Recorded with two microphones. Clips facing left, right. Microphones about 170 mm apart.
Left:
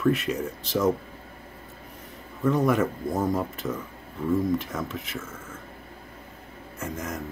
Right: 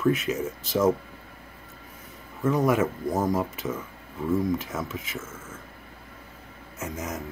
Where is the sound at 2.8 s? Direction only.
20° right (ahead or behind).